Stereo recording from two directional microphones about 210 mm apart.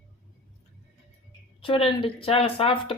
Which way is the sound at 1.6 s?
25° left (ahead or behind).